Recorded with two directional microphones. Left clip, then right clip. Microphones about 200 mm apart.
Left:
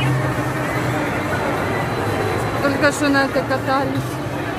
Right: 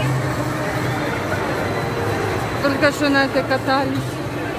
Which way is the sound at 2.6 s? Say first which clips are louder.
Even; centre (ahead or behind).